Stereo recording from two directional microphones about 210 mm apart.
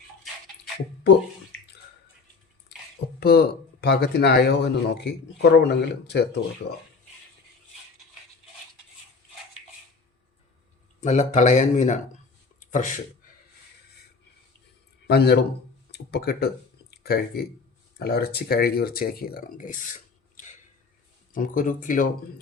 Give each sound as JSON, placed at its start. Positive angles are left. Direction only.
{"t": 3.2, "sound": "speech", "side_deg": 50}
{"t": 11.0, "sound": "speech", "side_deg": 35}
{"t": 12.5, "sound": "a sound", "side_deg": 35}
{"t": 15.0, "sound": "speech", "side_deg": 50}